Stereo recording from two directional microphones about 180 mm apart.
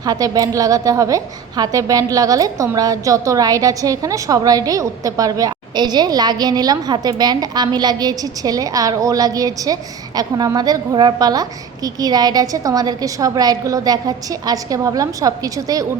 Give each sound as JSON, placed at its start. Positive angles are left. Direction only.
{"t": 0.0, "sound": "a woman's voice", "side_deg": -20}